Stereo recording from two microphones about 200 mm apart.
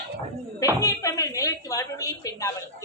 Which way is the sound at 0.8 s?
15° left (ahead or behind).